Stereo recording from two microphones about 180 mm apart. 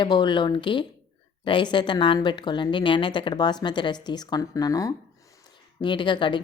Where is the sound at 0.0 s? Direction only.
25° left (ahead or behind).